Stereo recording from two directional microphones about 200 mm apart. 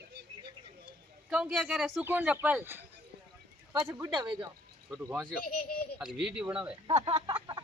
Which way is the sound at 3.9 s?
20° right (ahead or behind).